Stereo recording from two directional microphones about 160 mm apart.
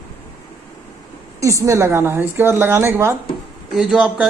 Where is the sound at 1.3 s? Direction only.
20° right (ahead or behind).